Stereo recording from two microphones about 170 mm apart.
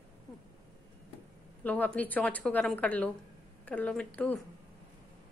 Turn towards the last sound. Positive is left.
turn(degrees=5)  # may be behind; listen again after turning